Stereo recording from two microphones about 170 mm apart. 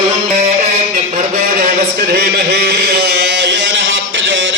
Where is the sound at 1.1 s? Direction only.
50° right (ahead or behind).